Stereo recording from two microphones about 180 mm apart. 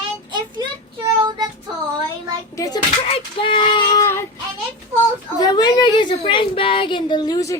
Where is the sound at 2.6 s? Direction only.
20° left (ahead or behind).